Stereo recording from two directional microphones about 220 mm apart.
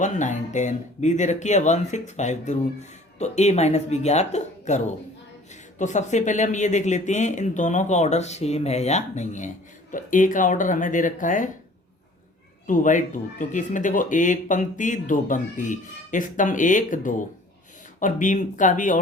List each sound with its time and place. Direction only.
0.0 s speech: 35° left (ahead or behind)
5.8 s speech: 35° left (ahead or behind)
12.6 s speech: 35° left (ahead or behind)